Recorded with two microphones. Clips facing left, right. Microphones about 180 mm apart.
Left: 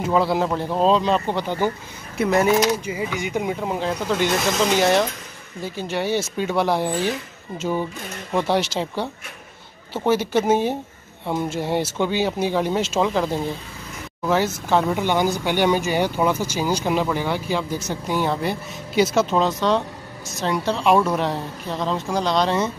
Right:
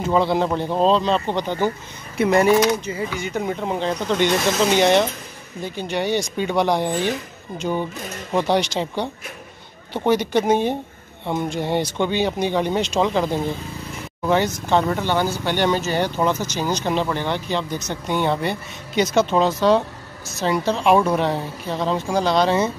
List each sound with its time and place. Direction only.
0.0 s speech: 5° left (ahead or behind)